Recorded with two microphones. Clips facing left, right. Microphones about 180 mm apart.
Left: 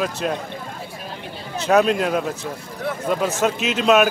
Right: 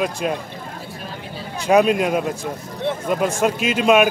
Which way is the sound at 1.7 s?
10° right (ahead or behind).